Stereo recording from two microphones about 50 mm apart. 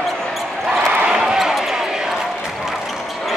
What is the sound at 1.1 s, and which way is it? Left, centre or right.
Basketball bounce, centre.